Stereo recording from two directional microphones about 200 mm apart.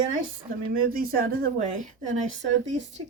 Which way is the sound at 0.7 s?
45° right (ahead or behind).